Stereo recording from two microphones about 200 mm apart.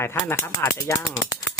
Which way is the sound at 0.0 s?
10° left (ahead or behind).